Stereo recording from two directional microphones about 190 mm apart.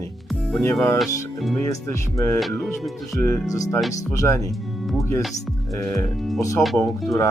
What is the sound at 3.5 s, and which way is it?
Speech, 15° left (ahead or behind).